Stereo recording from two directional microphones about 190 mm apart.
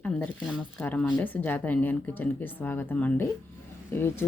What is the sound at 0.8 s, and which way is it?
Speech, 5° left (ahead or behind).